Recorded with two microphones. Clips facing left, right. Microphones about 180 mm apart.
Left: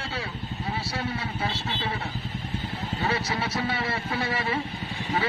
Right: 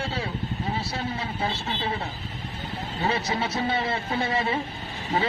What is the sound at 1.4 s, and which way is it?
Vehicle, 25° right (ahead or behind).